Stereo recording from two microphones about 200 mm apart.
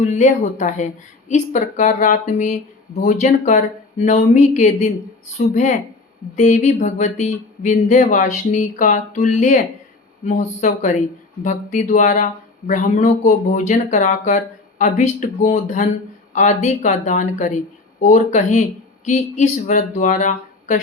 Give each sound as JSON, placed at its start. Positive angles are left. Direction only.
{"t": 0.0, "sound": "speech", "side_deg": 35}